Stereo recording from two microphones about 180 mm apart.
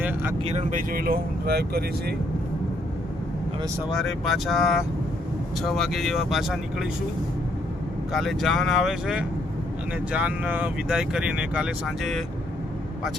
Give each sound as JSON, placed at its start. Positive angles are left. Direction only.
{"t": 0.0, "sound": "vehicle", "side_deg": -10}
{"t": 0.4, "sound": "speech", "side_deg": -45}
{"t": 3.9, "sound": "speech", "side_deg": 0}
{"t": 8.1, "sound": "speech", "side_deg": 0}